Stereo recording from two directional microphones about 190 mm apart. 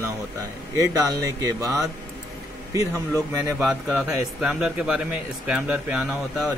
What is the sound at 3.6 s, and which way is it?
Speech, 10° right (ahead or behind).